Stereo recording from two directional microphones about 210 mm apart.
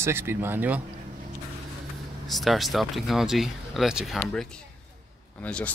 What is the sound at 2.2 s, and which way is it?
Speech, centre (ahead or behind).